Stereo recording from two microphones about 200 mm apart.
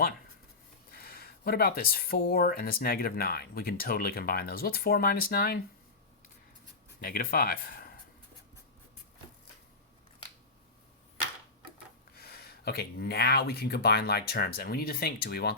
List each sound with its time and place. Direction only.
0.9 s speech: 50° left (ahead or behind)
7.0 s speech: 45° left (ahead or behind)
12.1 s speech: 50° left (ahead or behind)